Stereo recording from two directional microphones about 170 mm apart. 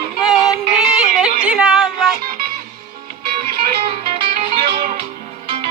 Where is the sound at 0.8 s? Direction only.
5° right (ahead or behind).